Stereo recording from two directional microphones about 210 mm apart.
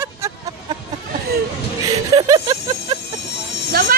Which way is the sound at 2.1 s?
20° right (ahead or behind).